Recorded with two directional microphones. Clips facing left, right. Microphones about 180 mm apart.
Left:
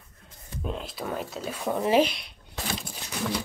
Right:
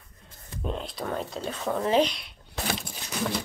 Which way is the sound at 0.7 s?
Centre (ahead or behind).